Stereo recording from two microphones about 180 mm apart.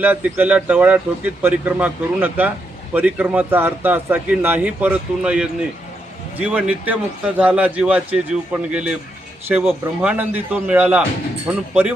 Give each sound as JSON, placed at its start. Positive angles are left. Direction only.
{"t": 0.0, "sound": "speech", "side_deg": -10}